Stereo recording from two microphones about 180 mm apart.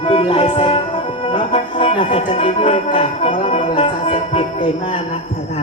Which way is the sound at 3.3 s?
35° left (ahead or behind).